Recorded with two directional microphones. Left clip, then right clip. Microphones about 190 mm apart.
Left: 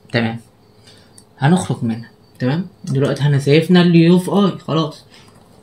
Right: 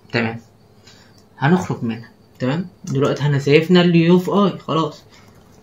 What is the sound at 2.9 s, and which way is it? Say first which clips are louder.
Speech: even; 20° left (ahead or behind).